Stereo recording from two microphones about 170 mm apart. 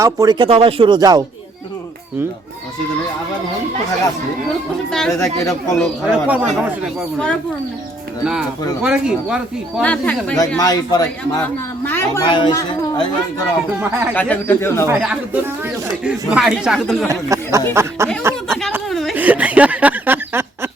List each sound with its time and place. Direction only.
0.0 s speech: 20° right (ahead or behind)
4.9 s speech: 5° left (ahead or behind)
5.1 s speech: 15° left (ahead or behind)
5.7 s speech: 5° right (ahead or behind)
9.8 s speech: 10° left (ahead or behind)
10.6 s speech: 25° left (ahead or behind)
12.3 s speech: 30° left (ahead or behind)
13.7 s speech: 10° right (ahead or behind)
14.2 s speech: 10° left (ahead or behind)
14.8 s speech: 10° right (ahead or behind)
17.1 s speech: 15° right (ahead or behind)
18.9 s a sound: centre (ahead or behind)
19.1 s speech: 10° right (ahead or behind)